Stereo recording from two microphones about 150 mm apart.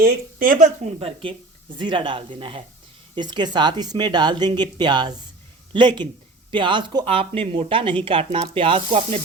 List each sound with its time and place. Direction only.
0.0 s speech: 70° right (ahead or behind)
0.9 s speech: 35° right (ahead or behind)